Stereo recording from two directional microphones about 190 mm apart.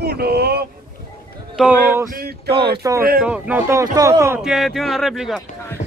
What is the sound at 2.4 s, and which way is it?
Speech, 30° right (ahead or behind).